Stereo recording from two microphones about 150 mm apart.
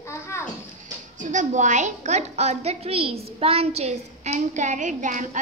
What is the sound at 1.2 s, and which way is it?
A woman's voice, 55° right (ahead or behind).